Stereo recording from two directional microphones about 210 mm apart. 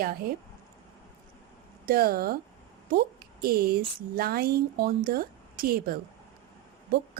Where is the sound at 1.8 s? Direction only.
45° right (ahead or behind).